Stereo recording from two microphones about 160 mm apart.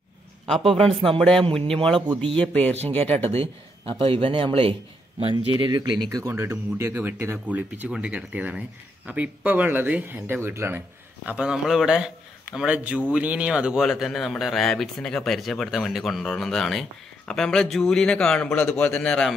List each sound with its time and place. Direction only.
0.5 s speech: centre (ahead or behind)
0.8 s speech: 35° right (ahead or behind)
2.3 s speech: 5° left (ahead or behind)
4.1 s speech: 35° right (ahead or behind); by 19.3 s 5° left (ahead or behind)